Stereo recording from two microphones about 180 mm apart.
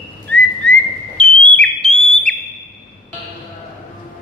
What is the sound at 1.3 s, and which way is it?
Bird, 30° right (ahead or behind).